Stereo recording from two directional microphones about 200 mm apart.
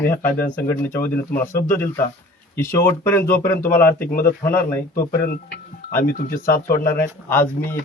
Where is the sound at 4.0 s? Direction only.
50° left (ahead or behind).